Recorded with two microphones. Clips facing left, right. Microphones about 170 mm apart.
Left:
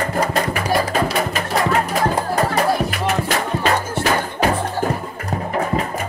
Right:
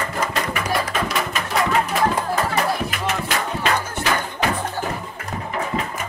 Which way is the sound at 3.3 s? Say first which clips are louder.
Left 3 dB; 40° left (ahead or behind).